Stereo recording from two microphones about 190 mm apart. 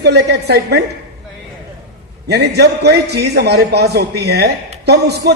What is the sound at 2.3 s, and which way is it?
A man's voice, 60° right (ahead or behind).